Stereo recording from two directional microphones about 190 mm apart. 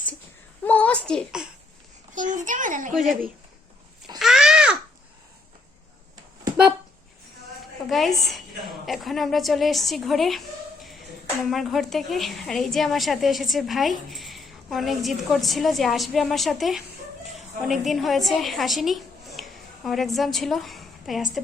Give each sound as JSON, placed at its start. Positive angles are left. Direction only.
{"t": 0.6, "sound": "a woman's voice", "side_deg": 5}
{"t": 2.1, "sound": "a child's voice", "side_deg": -40}
{"t": 2.9, "sound": "a woman's voice", "side_deg": 0}
{"t": 4.2, "sound": "a sound", "side_deg": 0}
{"t": 7.9, "sound": "a woman's voice", "side_deg": 0}
{"t": 11.4, "sound": "a woman's voice", "side_deg": 0}